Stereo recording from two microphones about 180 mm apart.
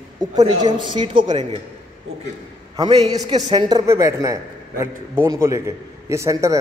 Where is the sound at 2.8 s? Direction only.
30° right (ahead or behind).